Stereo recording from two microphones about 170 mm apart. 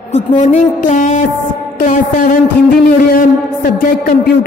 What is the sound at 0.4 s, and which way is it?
Music, 45° left (ahead or behind).